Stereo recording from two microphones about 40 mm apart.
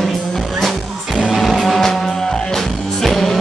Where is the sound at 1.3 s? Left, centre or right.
Centre.